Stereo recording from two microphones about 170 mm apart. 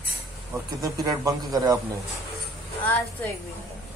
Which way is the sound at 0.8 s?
20° right (ahead or behind).